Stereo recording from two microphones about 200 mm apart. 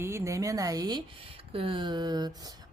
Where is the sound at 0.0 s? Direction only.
15° right (ahead or behind).